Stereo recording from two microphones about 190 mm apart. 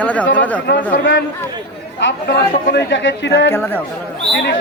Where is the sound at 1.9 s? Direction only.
65° left (ahead or behind).